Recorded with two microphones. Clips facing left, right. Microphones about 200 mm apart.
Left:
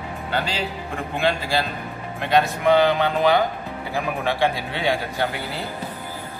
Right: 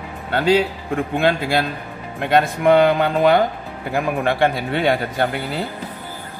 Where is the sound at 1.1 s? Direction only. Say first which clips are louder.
Right 3 dB; 55° right (ahead or behind).